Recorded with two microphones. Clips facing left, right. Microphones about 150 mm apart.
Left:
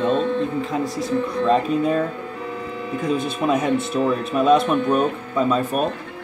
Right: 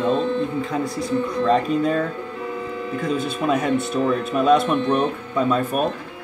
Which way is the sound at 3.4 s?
10° left (ahead or behind).